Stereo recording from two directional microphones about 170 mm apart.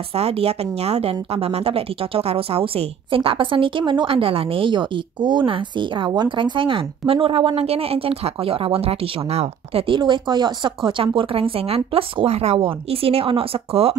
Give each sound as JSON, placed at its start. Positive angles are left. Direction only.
{"t": 0.1, "sound": "speech", "side_deg": -35}